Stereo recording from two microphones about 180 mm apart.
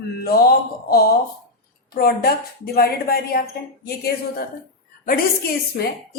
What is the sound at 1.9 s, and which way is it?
A woman's voice, 55° left (ahead or behind).